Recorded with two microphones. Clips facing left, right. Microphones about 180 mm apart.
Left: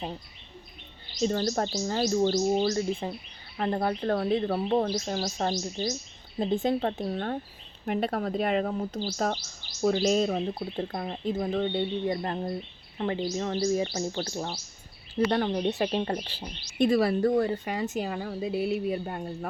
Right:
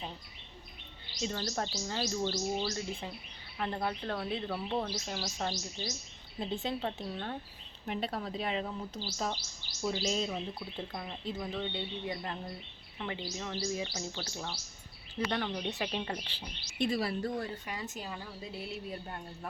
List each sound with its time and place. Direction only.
1.2 s speech: 45° left (ahead or behind)
3.0 s speech: 40° left (ahead or behind); by 19.5 s 70° left (ahead or behind)